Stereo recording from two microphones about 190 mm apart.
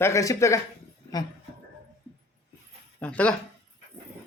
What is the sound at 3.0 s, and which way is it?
Speech, 5° left (ahead or behind).